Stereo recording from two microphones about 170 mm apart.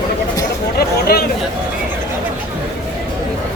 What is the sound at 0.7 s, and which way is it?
Chatter, 65° left (ahead or behind).